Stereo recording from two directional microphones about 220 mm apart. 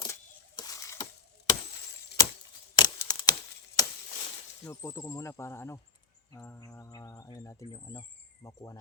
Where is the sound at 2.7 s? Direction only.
20° left (ahead or behind).